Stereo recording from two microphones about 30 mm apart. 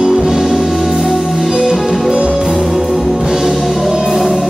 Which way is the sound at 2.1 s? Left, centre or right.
Right.